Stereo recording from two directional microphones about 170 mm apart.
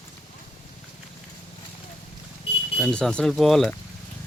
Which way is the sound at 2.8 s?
Centre (ahead or behind).